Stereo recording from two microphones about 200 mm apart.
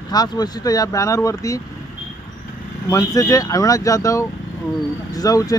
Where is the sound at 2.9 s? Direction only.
15° left (ahead or behind).